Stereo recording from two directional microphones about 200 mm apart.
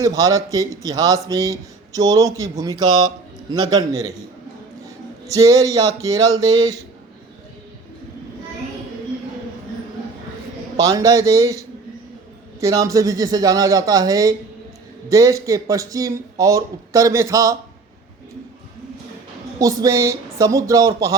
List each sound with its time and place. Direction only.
0.0 s a man's voice: 15° right (ahead or behind)
5.3 s speech: 15° right (ahead or behind)
10.8 s speech: 15° right (ahead or behind)
19.5 s speech: 20° right (ahead or behind)